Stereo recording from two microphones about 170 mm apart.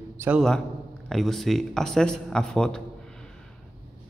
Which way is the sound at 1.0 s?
Centre (ahead or behind).